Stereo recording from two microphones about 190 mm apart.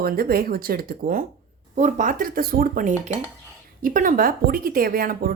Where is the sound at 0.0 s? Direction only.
50° right (ahead or behind).